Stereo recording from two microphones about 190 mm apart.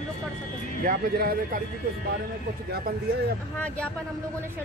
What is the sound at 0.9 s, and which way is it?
Speech, 50° right (ahead or behind).